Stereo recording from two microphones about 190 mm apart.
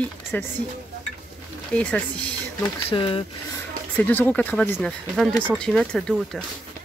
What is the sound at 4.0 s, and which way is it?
Speech, 10° left (ahead or behind).